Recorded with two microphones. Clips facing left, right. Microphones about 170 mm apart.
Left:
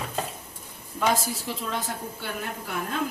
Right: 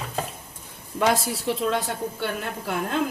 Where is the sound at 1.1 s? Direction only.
70° right (ahead or behind).